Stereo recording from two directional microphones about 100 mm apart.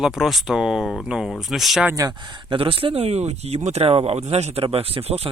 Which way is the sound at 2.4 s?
65° right (ahead or behind).